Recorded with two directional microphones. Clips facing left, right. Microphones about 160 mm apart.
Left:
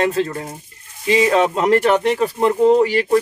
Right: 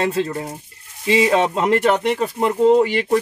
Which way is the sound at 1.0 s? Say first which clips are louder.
Left 1 dB; 25° right (ahead or behind).